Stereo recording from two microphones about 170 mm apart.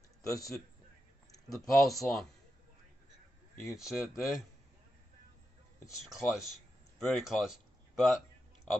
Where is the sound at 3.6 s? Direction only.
Centre (ahead or behind).